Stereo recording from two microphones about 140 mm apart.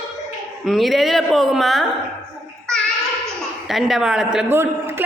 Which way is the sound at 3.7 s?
Centre (ahead or behind).